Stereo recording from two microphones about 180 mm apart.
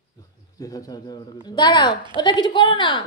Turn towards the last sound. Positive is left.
turn(degrees=25)  # may be behind; listen again after turning